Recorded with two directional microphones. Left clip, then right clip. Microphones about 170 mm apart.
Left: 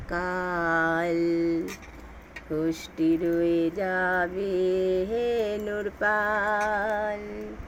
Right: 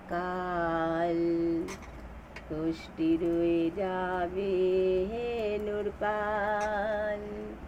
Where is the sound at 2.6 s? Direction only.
60° left (ahead or behind); by 7.1 s 40° left (ahead or behind).